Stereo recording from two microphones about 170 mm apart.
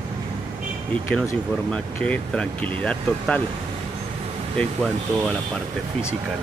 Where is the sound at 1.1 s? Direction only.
10° left (ahead or behind).